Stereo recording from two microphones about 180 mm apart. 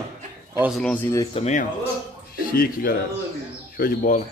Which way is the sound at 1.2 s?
35° left (ahead or behind).